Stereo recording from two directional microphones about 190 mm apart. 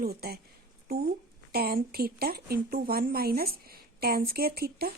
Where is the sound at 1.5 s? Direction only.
50° right (ahead or behind).